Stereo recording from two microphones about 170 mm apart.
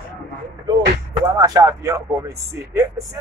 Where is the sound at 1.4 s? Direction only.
20° right (ahead or behind).